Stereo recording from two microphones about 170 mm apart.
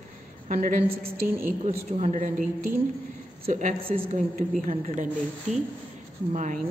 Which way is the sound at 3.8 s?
35° right (ahead or behind).